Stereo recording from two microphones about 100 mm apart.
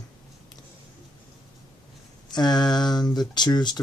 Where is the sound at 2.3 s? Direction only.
45° left (ahead or behind).